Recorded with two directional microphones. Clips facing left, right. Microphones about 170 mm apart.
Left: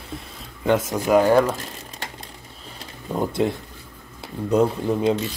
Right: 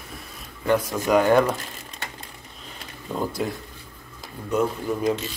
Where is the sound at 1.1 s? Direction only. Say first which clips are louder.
Left 2 dB; 5° left (ahead or behind).